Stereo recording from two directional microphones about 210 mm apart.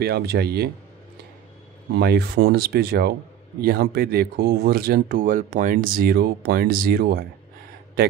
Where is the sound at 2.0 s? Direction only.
50° right (ahead or behind).